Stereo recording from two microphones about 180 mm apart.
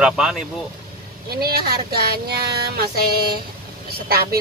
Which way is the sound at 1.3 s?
60° right (ahead or behind).